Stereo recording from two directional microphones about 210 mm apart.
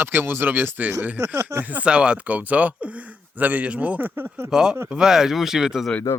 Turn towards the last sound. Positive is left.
turn(degrees=5)  # may be behind; listen again after turning